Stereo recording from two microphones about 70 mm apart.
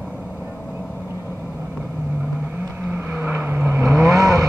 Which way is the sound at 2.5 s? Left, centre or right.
Right.